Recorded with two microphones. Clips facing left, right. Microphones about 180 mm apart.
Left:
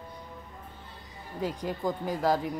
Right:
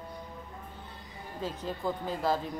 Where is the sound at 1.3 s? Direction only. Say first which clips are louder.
Left 4 dB; 15° left (ahead or behind).